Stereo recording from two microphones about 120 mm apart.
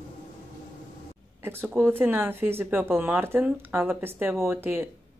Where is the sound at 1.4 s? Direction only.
20° right (ahead or behind).